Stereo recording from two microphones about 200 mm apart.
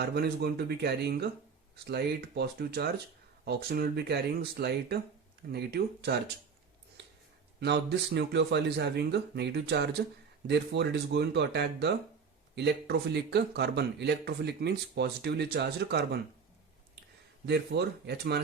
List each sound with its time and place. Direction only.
0.0 s speech: 50° right (ahead or behind)
7.0 s a sound: 55° right (ahead or behind)
7.6 s speech: 55° right (ahead or behind)
17.4 s speech: 55° right (ahead or behind)